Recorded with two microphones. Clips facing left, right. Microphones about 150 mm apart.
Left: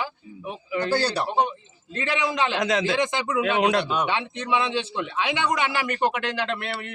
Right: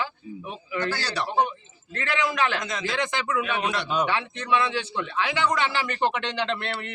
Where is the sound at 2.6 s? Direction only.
70° left (ahead or behind).